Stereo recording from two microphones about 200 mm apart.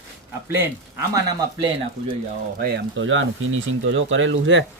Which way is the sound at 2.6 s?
60° right (ahead or behind).